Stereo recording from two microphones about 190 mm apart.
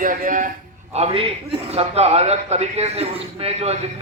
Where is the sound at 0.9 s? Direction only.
30° right (ahead or behind).